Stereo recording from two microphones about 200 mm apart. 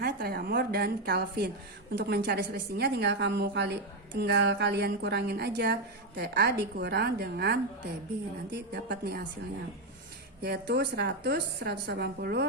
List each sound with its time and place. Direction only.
0.0 s a woman's voice: 50° right (ahead or behind)
10.4 s a woman's voice: 55° right (ahead or behind)